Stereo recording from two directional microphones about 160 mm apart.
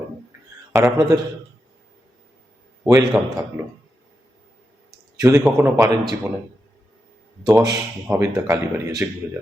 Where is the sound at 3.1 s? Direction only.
5° right (ahead or behind).